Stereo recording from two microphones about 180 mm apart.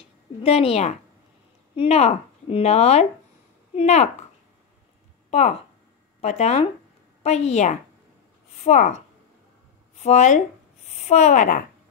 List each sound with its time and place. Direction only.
0.0 s a sound: 30° left (ahead or behind)
1.8 s speech: 35° left (ahead or behind)
5.3 s a woman's voice: 35° left (ahead or behind)